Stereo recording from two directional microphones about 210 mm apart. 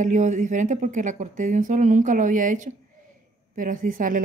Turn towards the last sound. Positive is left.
turn(degrees=-40)  # may be behind; listen again after turning